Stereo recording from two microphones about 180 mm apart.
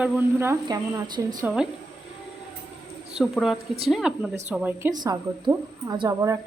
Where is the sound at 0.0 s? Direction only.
10° right (ahead or behind).